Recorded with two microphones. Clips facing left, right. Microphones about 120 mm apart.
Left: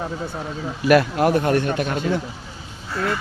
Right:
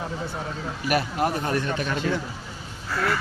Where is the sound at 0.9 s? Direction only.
90° left; by 1.7 s 70° left (ahead or behind).